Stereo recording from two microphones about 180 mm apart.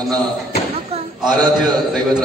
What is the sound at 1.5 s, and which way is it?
Speech, centre (ahead or behind).